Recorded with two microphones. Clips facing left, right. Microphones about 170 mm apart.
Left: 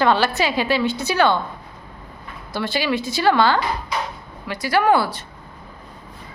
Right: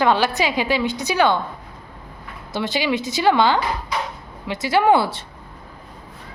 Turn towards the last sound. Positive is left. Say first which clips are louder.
# right 1 dB
turn(degrees=-25)  # may be behind; listen again after turning